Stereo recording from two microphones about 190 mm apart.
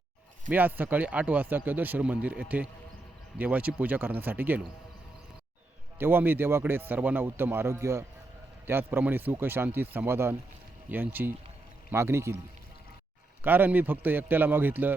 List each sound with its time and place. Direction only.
0.5 s a man's voice: 10° right (ahead or behind)
6.0 s a man's voice: 10° right (ahead or behind)
13.4 s a man's voice: 10° right (ahead or behind)